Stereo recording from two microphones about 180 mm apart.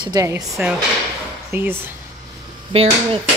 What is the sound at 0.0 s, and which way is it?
Speech, 20° right (ahead or behind).